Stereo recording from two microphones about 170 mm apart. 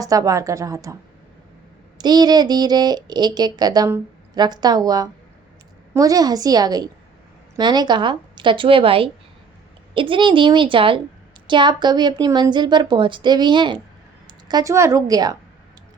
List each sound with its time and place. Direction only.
0.0 s speech: 20° right (ahead or behind)
2.0 s speech: 25° right (ahead or behind)